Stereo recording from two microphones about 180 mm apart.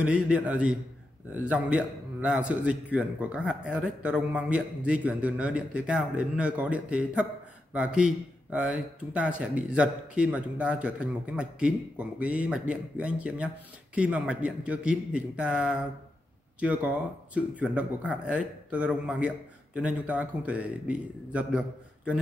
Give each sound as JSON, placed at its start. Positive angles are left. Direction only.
{"t": 0.0, "sound": "a man's voice", "side_deg": -5}